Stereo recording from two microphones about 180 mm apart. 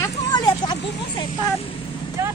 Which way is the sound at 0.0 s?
20° left (ahead or behind).